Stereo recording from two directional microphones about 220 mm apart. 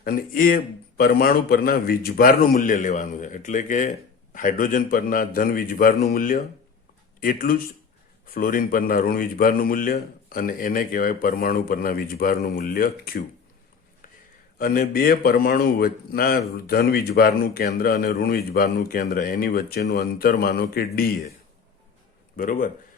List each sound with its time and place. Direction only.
0.0 s a man's voice: 40° left (ahead or behind)
14.6 s speech: 40° left (ahead or behind)
22.4 s a man's voice: 40° left (ahead or behind)